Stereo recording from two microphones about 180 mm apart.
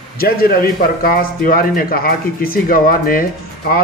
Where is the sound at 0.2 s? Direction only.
55° left (ahead or behind).